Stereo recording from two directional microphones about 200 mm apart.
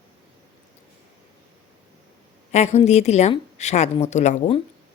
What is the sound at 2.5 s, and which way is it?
Speech, 35° left (ahead or behind).